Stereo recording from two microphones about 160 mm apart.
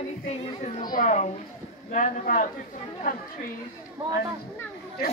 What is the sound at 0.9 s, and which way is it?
A child's voice, 45° left (ahead or behind).